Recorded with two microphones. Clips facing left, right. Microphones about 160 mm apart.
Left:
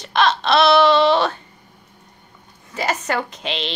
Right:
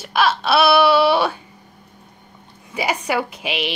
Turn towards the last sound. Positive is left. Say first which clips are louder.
# right 2 dB
turn(degrees=-10)  # may be behind; listen again after turning